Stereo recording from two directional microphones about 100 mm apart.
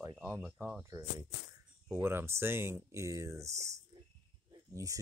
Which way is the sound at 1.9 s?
25° right (ahead or behind).